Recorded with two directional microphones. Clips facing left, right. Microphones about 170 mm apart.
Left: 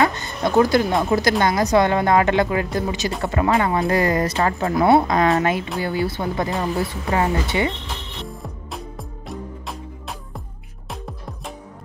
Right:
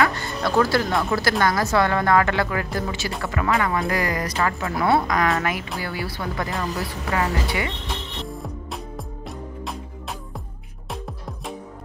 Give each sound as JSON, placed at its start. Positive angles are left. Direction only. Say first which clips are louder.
{"t": 0.0, "sound": "a woman's voice", "louder": "left 2 dB", "side_deg": 20}
{"t": 4.7, "sound": "a woman's voice", "louder": "left 5 dB", "side_deg": 20}
{"t": 8.2, "sound": "music", "louder": "right 2 dB", "side_deg": 0}